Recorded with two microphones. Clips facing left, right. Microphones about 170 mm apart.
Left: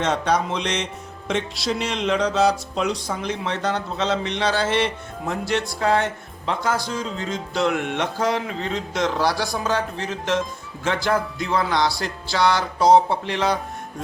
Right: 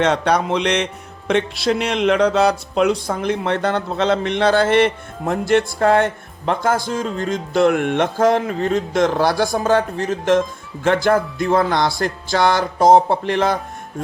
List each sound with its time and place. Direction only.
0.0 s music: 65° right (ahead or behind)
1.3 s speech: 60° right (ahead or behind)